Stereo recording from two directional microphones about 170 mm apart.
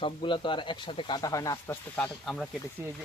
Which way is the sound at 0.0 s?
30° left (ahead or behind).